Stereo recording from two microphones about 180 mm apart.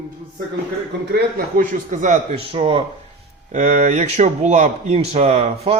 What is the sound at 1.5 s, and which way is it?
Speech, 45° right (ahead or behind).